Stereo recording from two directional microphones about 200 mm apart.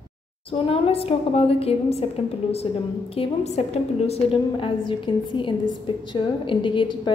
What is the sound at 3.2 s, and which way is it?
A woman's voice, 35° left (ahead or behind).